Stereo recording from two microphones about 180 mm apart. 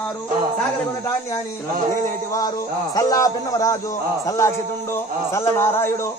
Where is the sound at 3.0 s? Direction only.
20° left (ahead or behind).